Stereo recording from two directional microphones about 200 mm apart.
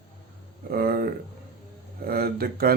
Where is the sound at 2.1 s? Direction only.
50° right (ahead or behind).